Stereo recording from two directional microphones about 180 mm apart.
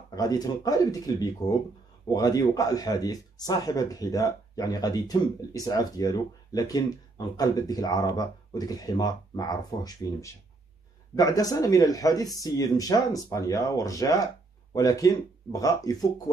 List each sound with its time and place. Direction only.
0.1 s speech: 20° left (ahead or behind)